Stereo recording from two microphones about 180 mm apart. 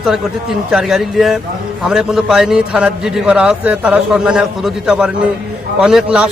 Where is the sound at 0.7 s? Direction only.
Centre (ahead or behind).